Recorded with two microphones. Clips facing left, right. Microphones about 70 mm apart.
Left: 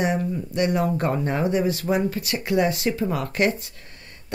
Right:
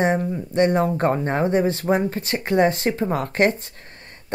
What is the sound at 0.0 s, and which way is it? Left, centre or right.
Speech, right.